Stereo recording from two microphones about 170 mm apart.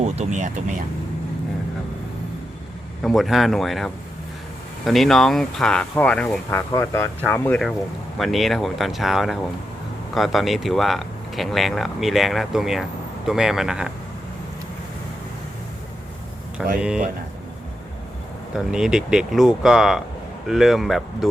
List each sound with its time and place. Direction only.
0.0 s speech: 45° right (ahead or behind)
3.0 s speech: centre (ahead or behind)
8.2 s speech: centre (ahead or behind)
16.6 s speech: centre (ahead or behind)
18.5 s speech: 5° right (ahead or behind)